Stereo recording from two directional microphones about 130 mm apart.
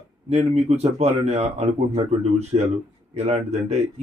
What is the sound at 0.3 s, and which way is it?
A man's voice, 55° right (ahead or behind).